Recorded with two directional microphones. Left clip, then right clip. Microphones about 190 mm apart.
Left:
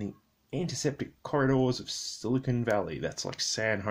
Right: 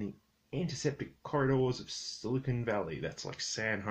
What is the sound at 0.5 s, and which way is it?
Speech, 45° left (ahead or behind).